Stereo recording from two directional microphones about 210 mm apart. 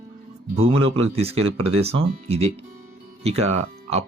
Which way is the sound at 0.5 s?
25° right (ahead or behind).